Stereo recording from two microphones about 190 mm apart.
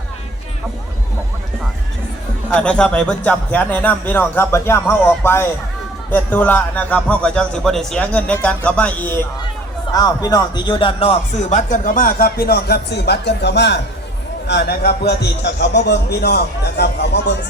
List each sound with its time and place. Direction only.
2.5 s a man's voice: 5° left (ahead or behind); by 17.3 s 60° left (ahead or behind)